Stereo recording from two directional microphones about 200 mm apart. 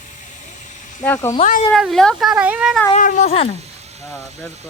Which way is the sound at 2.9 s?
40° left (ahead or behind).